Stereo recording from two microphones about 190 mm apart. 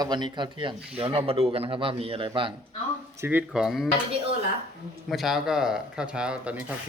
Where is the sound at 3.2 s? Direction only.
10° right (ahead or behind).